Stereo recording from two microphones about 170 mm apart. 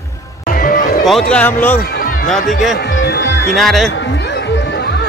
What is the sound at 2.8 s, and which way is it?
Music, 90° left.